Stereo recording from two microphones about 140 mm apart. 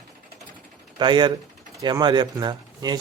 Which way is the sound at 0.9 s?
35° right (ahead or behind).